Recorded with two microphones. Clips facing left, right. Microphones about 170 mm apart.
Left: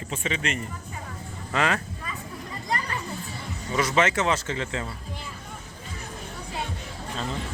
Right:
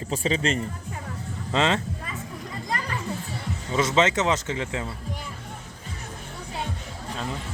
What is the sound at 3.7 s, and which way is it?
Speech, 20° right (ahead or behind).